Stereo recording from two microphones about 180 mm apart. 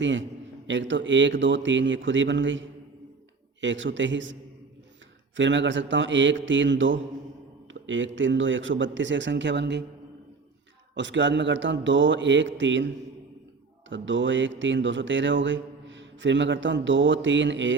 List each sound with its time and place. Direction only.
0.0 s a man's voice: 90° right
5.4 s a man's voice: 90° right
10.9 s a man's voice: 90° right
13.9 s a man's voice: 90° right